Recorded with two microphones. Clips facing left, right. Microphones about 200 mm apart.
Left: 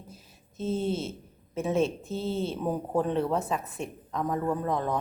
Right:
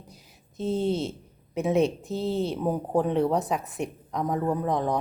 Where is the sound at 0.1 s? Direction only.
15° right (ahead or behind).